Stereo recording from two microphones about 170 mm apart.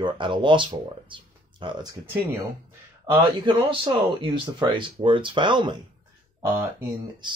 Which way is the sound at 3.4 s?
30° right (ahead or behind).